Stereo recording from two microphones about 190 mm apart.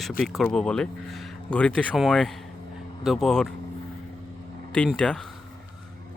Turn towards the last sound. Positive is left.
turn(degrees=5)  # may be behind; listen again after turning